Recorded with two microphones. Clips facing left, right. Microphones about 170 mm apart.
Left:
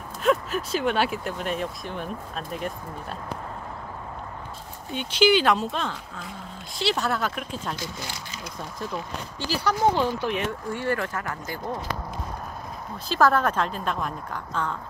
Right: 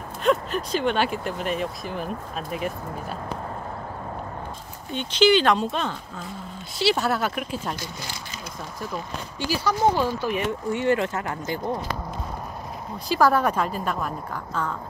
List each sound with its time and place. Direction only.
0.2 s speech: 5° left (ahead or behind)
4.9 s speech: 10° left (ahead or behind)
9.4 s a woman's voice: 15° right (ahead or behind)
9.9 s speech: 20° left (ahead or behind)
10.7 s speech: 20° right (ahead or behind)
13.1 s a woman's voice: 10° right (ahead or behind)